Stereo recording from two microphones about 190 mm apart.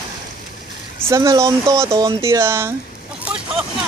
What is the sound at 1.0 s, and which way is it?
Speech, 15° right (ahead or behind).